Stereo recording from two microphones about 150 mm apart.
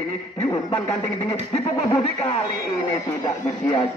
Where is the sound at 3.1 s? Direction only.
20° left (ahead or behind).